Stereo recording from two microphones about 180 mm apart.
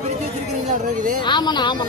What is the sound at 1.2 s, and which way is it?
Speech, 25° left (ahead or behind).